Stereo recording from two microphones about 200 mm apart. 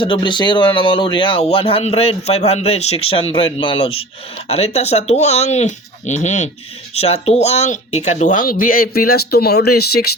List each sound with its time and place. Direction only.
0.0 s speech: 25° left (ahead or behind); by 10.1 s 50° left (ahead or behind)